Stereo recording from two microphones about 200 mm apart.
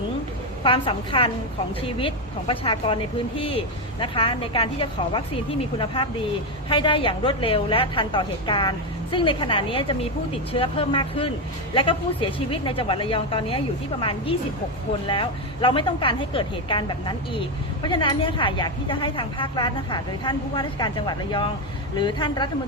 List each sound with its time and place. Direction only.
0.6 s a woman's voice: 25° left (ahead or behind)